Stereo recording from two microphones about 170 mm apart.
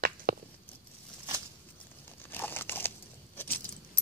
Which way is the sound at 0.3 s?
60° right (ahead or behind).